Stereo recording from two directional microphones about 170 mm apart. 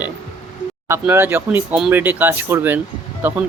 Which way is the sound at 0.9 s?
15° right (ahead or behind).